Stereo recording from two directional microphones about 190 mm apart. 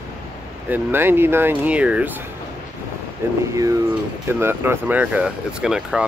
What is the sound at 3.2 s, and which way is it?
Speech, 15° right (ahead or behind).